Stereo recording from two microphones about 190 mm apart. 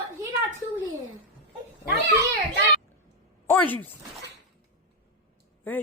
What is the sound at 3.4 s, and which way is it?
Speech, 10° left (ahead or behind).